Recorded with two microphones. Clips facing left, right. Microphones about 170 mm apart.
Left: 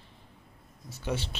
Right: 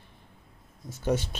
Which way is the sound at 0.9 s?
45° right (ahead or behind).